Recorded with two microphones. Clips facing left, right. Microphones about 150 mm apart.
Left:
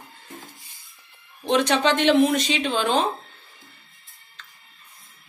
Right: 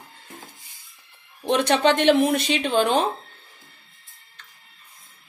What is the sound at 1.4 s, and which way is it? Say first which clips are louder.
Speech: right 1 dB; 60° right (ahead or behind).